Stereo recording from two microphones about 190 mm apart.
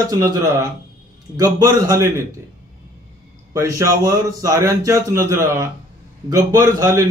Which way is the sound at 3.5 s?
15° right (ahead or behind).